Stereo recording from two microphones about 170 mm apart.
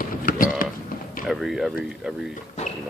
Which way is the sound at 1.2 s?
Centre (ahead or behind).